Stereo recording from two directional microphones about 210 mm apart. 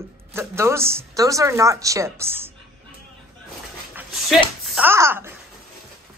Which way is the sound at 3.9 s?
5° right (ahead or behind).